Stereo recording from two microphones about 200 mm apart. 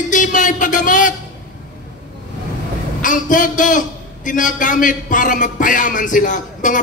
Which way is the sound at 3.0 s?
40° left (ahead or behind).